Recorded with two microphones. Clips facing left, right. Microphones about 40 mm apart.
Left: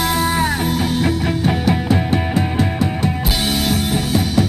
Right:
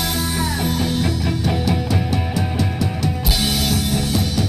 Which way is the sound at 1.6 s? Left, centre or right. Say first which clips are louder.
Left 4 dB; left.